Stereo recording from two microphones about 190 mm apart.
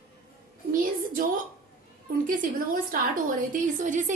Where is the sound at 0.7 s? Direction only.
45° right (ahead or behind).